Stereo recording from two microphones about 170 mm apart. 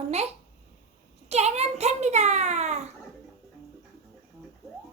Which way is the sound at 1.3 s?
40° right (ahead or behind).